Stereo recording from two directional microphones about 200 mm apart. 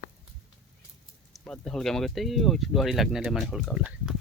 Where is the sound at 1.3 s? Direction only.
5° left (ahead or behind).